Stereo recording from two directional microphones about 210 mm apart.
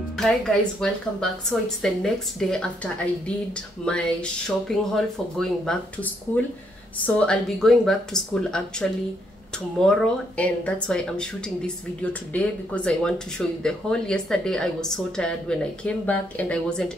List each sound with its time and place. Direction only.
0.2 s speech: centre (ahead or behind)
7.2 s speech: 5° left (ahead or behind)
9.8 s speech: 5° left (ahead or behind)